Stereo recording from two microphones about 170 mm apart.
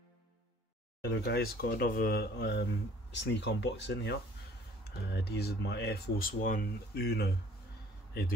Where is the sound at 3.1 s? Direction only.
90° left.